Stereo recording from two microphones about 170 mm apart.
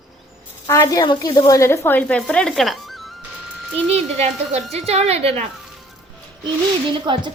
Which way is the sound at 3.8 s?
40° right (ahead or behind).